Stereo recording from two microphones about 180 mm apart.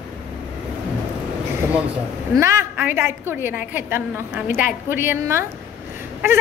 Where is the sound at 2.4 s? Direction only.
15° right (ahead or behind).